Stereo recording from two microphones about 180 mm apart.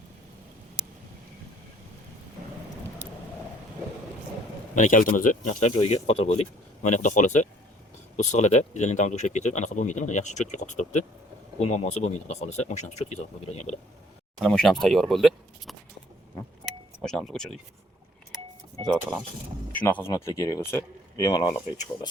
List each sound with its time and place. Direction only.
4.7 s speech: 45° left (ahead or behind)
14.3 s speech: centre (ahead or behind)
16.6 s keys jangling: 5° left (ahead or behind)
19.7 s speech: 10° left (ahead or behind)